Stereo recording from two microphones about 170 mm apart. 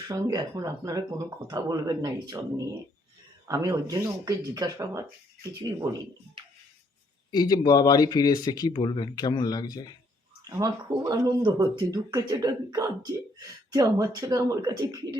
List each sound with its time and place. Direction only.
0.1 s speech: 20° right (ahead or behind)
7.3 s speech: 25° left (ahead or behind)
10.4 s speech: 20° right (ahead or behind)